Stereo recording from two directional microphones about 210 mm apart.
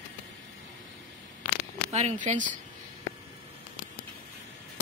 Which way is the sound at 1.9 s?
30° right (ahead or behind).